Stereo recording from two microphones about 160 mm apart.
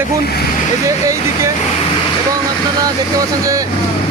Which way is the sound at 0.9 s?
20° right (ahead or behind).